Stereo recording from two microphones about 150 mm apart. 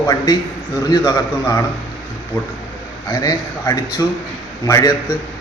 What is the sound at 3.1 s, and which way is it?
A man's voice, 25° left (ahead or behind).